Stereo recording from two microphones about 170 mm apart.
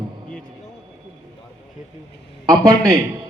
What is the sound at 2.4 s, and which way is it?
Speech, 20° right (ahead or behind).